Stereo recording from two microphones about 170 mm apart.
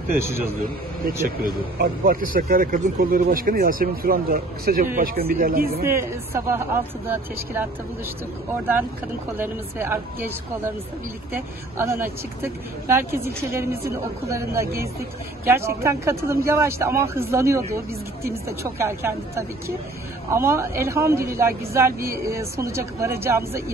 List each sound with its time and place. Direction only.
0.1 s speech: 15° right (ahead or behind)
1.8 s speech: 55° right (ahead or behind)
5.9 s speech: 15° right (ahead or behind)
9.4 s speech: 10° right (ahead or behind)
11.8 s speech: 15° right (ahead or behind)